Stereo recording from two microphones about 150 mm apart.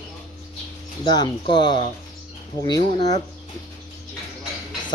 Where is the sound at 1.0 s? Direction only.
30° left (ahead or behind).